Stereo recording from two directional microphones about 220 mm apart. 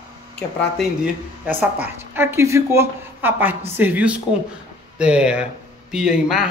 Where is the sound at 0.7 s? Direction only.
5° right (ahead or behind).